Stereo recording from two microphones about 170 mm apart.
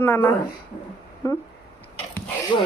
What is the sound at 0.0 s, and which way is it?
Speech, 10° left (ahead or behind).